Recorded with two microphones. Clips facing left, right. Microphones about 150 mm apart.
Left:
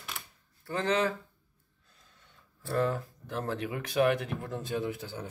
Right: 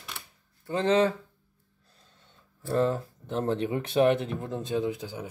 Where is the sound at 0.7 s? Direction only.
25° right (ahead or behind).